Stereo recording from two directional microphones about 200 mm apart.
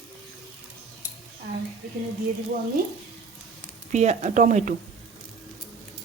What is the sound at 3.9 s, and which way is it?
Speech, 35° right (ahead or behind).